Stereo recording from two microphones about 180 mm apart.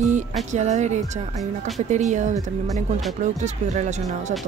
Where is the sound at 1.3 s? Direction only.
Centre (ahead or behind).